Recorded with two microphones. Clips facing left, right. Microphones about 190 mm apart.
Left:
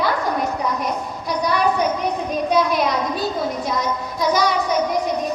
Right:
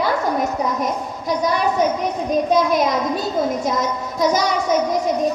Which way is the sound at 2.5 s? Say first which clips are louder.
Even; 45° right (ahead or behind).